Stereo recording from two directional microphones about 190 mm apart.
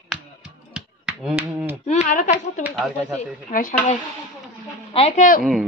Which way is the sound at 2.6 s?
Centre (ahead or behind).